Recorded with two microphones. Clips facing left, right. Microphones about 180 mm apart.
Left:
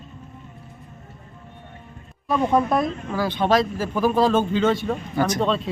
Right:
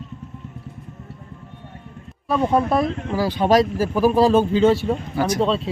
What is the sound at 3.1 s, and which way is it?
Speech, 10° right (ahead or behind).